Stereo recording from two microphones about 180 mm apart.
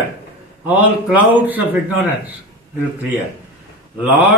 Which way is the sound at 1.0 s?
10° right (ahead or behind).